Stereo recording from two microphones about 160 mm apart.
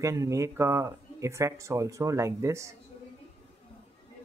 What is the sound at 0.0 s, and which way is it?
Speech, 20° right (ahead or behind).